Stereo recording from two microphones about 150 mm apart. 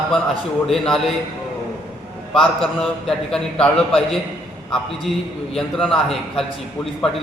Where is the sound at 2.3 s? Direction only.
5° left (ahead or behind).